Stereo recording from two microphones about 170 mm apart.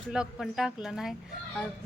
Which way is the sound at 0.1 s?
5° right (ahead or behind).